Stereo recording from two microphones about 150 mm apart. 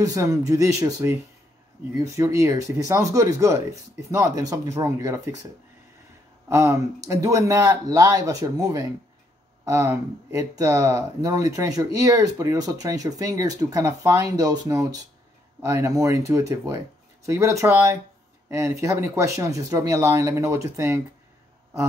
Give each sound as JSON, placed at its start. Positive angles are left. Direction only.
{"t": 0.0, "sound": "speech", "side_deg": -20}
{"t": 6.5, "sound": "speech", "side_deg": -20}